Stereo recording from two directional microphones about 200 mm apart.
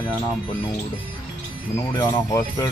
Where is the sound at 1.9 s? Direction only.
15° left (ahead or behind).